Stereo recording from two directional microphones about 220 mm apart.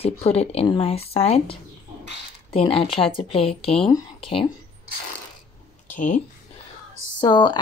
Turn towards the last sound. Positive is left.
turn(degrees=20)  # may be behind; listen again after turning